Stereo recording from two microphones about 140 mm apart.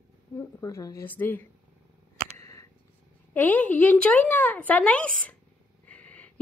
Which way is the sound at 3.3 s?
10° left (ahead or behind).